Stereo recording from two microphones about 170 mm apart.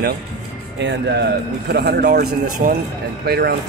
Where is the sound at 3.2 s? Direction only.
70° right (ahead or behind).